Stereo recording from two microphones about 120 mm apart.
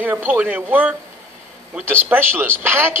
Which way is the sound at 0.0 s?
15° right (ahead or behind).